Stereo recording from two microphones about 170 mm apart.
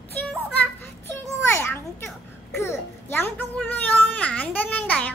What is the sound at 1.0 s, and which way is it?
Children playing, 15° left (ahead or behind).